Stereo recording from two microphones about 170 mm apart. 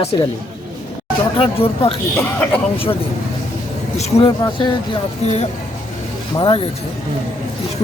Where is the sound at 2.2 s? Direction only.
10° left (ahead or behind).